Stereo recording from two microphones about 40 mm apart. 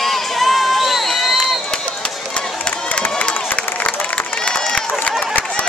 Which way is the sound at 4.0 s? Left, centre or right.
Left.